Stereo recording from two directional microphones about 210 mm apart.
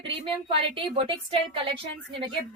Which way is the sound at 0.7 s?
25° right (ahead or behind).